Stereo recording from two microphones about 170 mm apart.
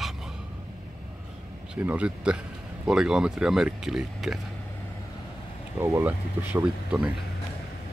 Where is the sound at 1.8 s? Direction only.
5° right (ahead or behind).